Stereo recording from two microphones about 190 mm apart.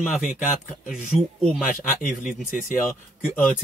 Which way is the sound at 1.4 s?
Centre (ahead or behind).